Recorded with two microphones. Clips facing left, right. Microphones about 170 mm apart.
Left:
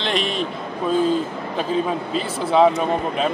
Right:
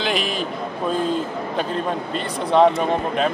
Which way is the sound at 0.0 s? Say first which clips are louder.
Even; centre (ahead or behind).